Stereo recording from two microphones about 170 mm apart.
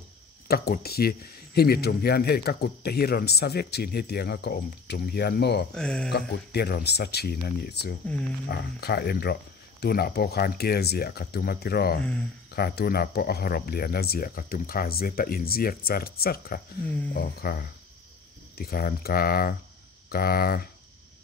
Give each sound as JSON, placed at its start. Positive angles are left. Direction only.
{"t": 0.5, "sound": "speech", "side_deg": 65}
{"t": 5.8, "sound": "speech", "side_deg": 5}
{"t": 6.1, "sound": "speech", "side_deg": 70}